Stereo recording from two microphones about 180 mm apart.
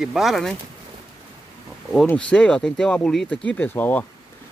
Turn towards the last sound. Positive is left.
turn(degrees=10)  # may be behind; listen again after turning